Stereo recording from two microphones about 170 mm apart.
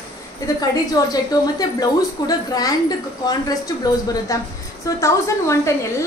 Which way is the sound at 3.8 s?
20° left (ahead or behind).